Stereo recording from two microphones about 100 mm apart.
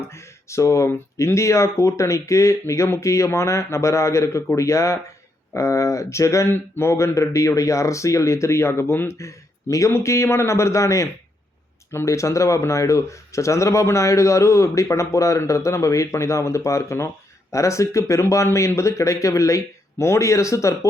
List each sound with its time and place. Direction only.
0.1 s speech: 30° left (ahead or behind)